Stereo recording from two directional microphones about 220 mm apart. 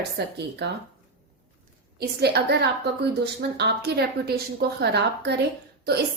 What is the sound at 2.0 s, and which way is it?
A woman's voice, 45° right (ahead or behind).